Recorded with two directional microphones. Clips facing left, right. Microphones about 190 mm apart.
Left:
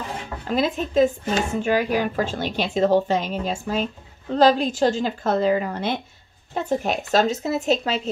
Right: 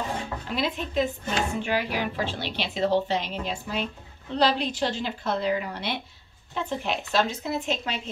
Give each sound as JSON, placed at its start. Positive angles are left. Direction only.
{"t": 0.5, "sound": "a woman's voice", "side_deg": 45}